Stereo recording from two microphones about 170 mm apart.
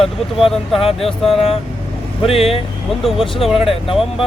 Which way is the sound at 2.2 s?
35° left (ahead or behind).